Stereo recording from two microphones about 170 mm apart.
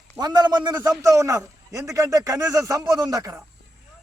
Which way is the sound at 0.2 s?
25° right (ahead or behind).